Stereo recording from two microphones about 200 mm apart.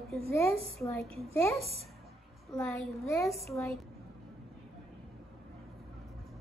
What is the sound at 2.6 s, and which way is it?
Speech, 15° left (ahead or behind).